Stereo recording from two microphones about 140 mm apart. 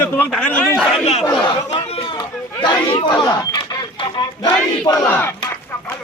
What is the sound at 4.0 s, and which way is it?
Battle cry, 30° left (ahead or behind).